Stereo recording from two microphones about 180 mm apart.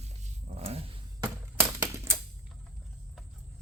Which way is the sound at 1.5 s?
15° right (ahead or behind).